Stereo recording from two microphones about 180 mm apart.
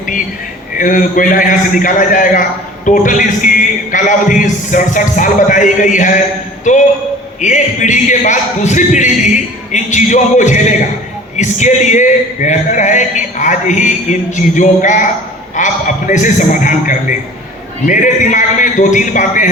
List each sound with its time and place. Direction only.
0.8 s a man's voice: 50° left (ahead or behind)
7.4 s a man's voice: 45° left (ahead or behind)